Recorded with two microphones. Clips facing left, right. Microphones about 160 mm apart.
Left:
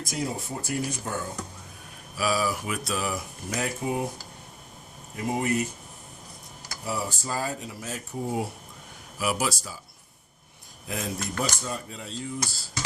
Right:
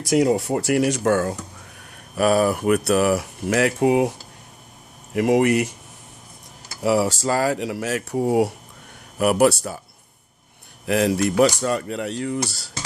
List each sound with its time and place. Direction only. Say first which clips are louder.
0.0 s speech: right 13 dB; 80° right
2.1 s speech: right 9 dB; 55° right (ahead or behind); by 4.1 s 75° right (ahead or behind)
5.1 s speech: right 10 dB; 80° right
6.8 s speech: right 12 dB; 75° right (ahead or behind)
9.1 s speech: right 11 dB; 60° right (ahead or behind)
10.8 s speech: right 13 dB; 75° right (ahead or behind)